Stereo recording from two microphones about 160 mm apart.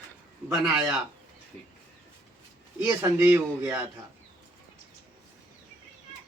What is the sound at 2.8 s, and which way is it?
Speech, 15° right (ahead or behind).